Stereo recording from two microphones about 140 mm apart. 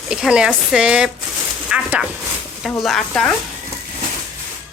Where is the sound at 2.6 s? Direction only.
Centre (ahead or behind).